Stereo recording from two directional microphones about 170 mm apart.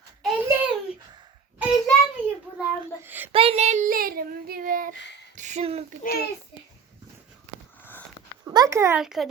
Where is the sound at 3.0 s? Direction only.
10° right (ahead or behind).